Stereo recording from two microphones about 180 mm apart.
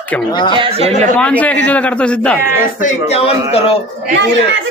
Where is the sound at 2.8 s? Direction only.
35° left (ahead or behind).